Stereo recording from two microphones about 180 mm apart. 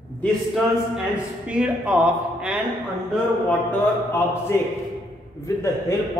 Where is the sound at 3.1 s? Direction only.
10° left (ahead or behind).